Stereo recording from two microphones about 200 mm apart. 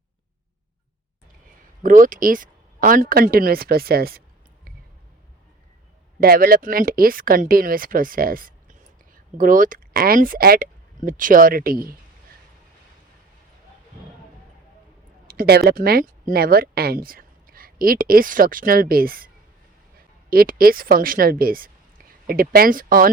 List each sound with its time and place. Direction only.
1.8 s speech: 40° right (ahead or behind)
6.1 s speech: 45° right (ahead or behind)
15.3 s speech: 50° right (ahead or behind)
20.3 s a woman's voice: 50° right (ahead or behind)